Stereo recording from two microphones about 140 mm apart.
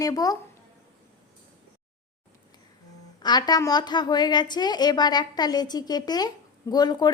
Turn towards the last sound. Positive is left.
turn(degrees=30)  # may be behind; listen again after turning